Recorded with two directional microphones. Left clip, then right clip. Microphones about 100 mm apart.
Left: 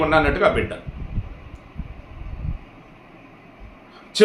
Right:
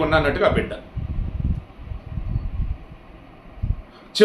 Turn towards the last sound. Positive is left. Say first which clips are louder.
# even
turn(degrees=15)  # may be behind; listen again after turning